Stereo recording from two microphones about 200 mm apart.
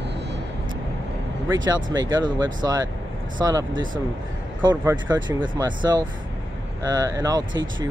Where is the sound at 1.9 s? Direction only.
20° right (ahead or behind).